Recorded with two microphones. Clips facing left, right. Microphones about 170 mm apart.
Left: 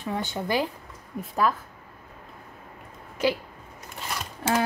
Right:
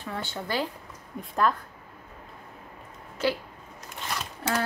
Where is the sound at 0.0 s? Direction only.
15° left (ahead or behind).